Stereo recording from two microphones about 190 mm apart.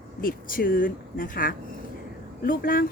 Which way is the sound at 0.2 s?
45° left (ahead or behind).